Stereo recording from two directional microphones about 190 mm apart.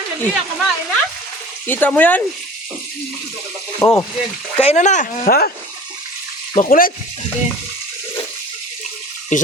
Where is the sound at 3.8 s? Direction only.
15° left (ahead or behind).